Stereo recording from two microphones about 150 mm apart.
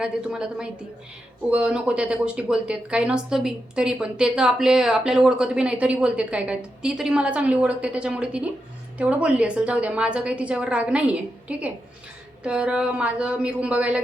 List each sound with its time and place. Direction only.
0.0 s a woman's voice: 5° right (ahead or behind)